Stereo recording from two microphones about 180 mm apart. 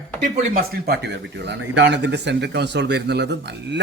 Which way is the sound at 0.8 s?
65° right (ahead or behind).